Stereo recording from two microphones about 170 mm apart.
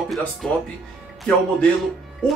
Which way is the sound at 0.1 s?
Centre (ahead or behind).